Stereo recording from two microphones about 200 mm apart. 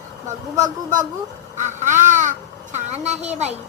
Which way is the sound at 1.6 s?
35° right (ahead or behind).